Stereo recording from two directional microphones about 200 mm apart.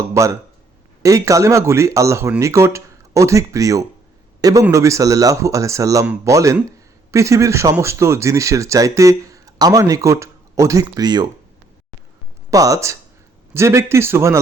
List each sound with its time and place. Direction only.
0.1 s speech: 15° right (ahead or behind)
12.5 s speech: 15° right (ahead or behind)